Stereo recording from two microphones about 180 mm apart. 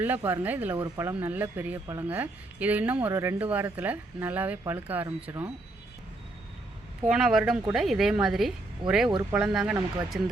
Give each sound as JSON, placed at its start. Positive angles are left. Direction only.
{"t": 0.0, "sound": "speech", "side_deg": -10}
{"t": 7.1, "sound": "a woman's voice", "side_deg": -5}
{"t": 8.8, "sound": "speech", "side_deg": -30}
{"t": 9.3, "sound": "a woman's voice", "side_deg": -5}